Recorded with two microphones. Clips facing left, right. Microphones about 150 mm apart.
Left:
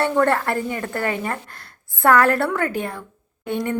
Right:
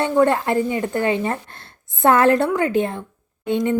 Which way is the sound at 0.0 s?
15° right (ahead or behind).